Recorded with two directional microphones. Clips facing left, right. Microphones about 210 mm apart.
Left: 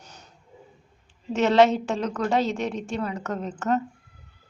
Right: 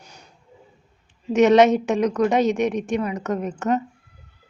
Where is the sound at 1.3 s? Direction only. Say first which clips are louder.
Right 4 dB; 20° right (ahead or behind).